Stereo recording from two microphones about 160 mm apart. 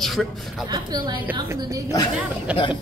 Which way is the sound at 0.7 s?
25° right (ahead or behind).